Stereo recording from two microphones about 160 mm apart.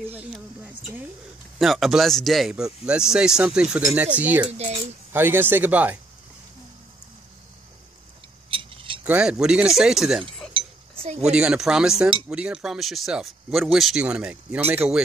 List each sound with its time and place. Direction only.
1.6 s speech: centre (ahead or behind)
4.5 s speech: 40° right (ahead or behind)
5.1 s speech: 15° right (ahead or behind)
8.5 s a sound: 35° right (ahead or behind)
9.0 s speech: 5° right (ahead or behind)
10.5 s dishes: 40° right (ahead or behind)
11.2 s speech: 5° right (ahead or behind)